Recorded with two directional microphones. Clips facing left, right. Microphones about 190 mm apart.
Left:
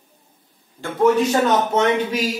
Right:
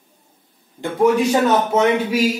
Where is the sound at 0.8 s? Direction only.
10° right (ahead or behind).